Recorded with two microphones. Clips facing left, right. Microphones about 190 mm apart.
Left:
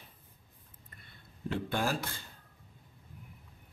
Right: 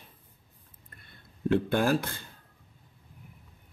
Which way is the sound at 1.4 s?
55° right (ahead or behind).